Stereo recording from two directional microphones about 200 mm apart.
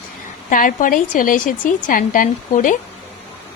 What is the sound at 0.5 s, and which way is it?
A woman's voice, 45° left (ahead or behind).